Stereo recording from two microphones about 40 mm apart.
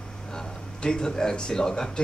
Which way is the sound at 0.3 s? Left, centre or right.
Centre.